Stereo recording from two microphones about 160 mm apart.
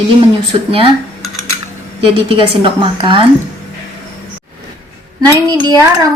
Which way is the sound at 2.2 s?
30° right (ahead or behind).